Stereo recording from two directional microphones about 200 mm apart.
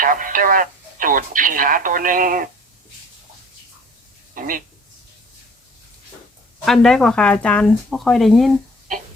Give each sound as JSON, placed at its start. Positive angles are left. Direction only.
{"t": 0.0, "sound": "speech", "side_deg": -45}
{"t": 4.4, "sound": "speech", "side_deg": -45}
{"t": 6.7, "sound": "speech", "side_deg": 0}